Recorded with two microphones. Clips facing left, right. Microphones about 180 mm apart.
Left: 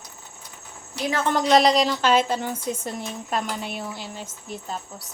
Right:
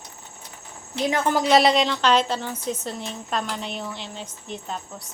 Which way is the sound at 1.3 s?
5° right (ahead or behind).